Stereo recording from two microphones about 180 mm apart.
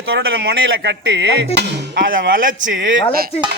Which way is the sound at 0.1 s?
65° right (ahead or behind).